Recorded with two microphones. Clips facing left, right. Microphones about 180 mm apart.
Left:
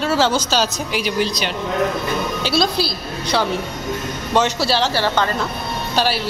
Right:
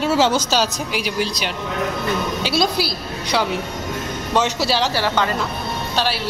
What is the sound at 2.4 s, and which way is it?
Speech, 10° right (ahead or behind).